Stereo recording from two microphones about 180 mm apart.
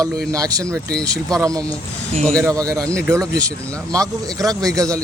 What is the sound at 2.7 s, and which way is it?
Speech, 5° left (ahead or behind).